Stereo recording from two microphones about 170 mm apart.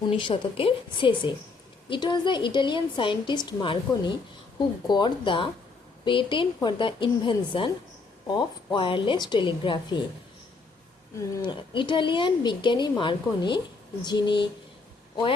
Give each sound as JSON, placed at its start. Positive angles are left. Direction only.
{"t": 0.0, "sound": "a woman's voice", "side_deg": 30}
{"t": 11.3, "sound": "a woman's voice", "side_deg": 30}